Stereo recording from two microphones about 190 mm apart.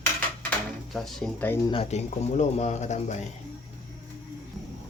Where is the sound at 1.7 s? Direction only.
30° left (ahead or behind).